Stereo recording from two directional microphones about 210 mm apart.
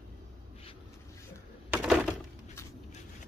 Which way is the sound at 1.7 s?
5° right (ahead or behind).